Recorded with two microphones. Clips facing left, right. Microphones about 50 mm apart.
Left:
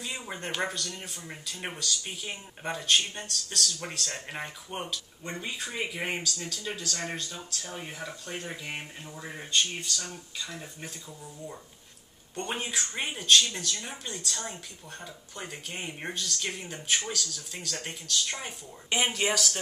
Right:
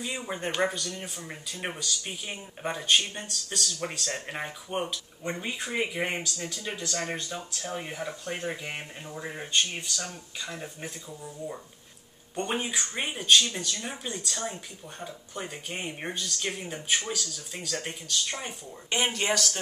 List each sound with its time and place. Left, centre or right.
0.0 s speech: centre
6.0 s speech: centre
12.4 s speech: centre